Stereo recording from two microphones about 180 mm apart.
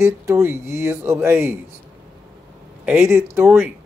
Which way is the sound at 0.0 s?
15° right (ahead or behind).